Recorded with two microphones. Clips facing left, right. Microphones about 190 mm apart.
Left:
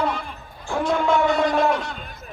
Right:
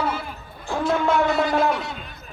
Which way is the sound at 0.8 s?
Centre (ahead or behind).